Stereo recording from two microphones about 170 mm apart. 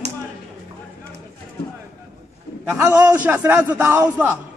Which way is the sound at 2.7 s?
15° right (ahead or behind).